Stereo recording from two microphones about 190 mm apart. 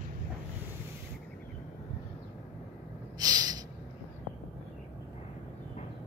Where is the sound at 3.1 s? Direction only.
20° right (ahead or behind).